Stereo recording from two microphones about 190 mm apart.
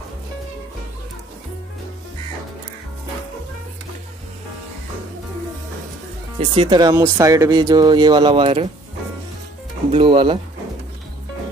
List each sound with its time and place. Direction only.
6.5 s speech: 25° right (ahead or behind)
9.8 s speech: 30° right (ahead or behind)